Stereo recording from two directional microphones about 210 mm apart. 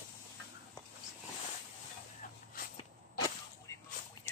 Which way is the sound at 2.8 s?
15° left (ahead or behind).